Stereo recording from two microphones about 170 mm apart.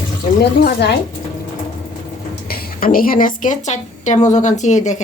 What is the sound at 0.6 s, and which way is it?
Speech, 80° left.